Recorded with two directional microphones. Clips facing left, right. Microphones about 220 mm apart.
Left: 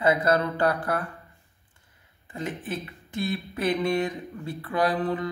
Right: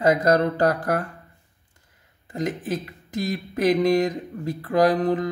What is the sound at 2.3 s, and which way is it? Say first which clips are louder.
Speech: right 6 dB; 40° right (ahead or behind).